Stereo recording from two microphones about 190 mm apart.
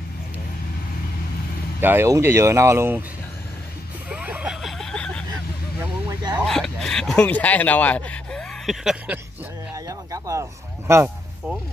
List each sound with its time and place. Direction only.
1.8 s speech: 10° right (ahead or behind)
4.1 s vehicle: 5° right (ahead or behind)
5.8 s a sound: 20° right (ahead or behind)
6.3 s speech: centre (ahead or behind)
9.8 s speech: 15° right (ahead or behind)